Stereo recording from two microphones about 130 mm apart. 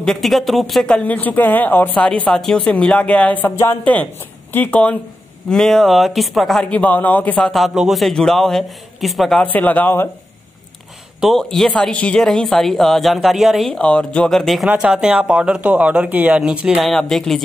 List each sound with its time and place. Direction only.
0.0 s speech: centre (ahead or behind)
9.4 s speech: 10° left (ahead or behind)
11.1 s speech: centre (ahead or behind)